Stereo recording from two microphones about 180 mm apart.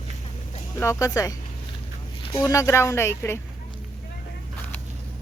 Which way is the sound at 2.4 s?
20° left (ahead or behind).